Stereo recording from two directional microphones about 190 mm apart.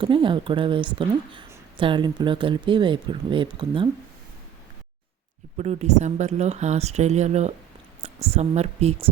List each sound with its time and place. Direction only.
0.0 s speech: 25° right (ahead or behind)
5.5 s speech: 35° right (ahead or behind)